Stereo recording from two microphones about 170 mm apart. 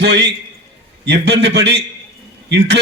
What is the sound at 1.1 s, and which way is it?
Speech, 90° right.